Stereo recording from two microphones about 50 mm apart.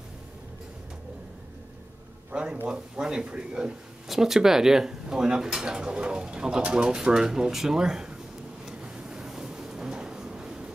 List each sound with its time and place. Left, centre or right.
2.3 s speech: right
8.6 s vehicle: centre